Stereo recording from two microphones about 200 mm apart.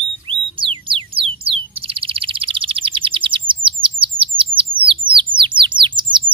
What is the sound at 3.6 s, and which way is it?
Chirp, 25° right (ahead or behind).